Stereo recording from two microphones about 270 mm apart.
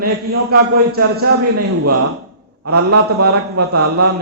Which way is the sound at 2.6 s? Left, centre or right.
Right.